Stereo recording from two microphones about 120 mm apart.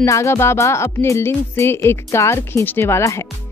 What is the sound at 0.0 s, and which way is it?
Speech, 25° left (ahead or behind).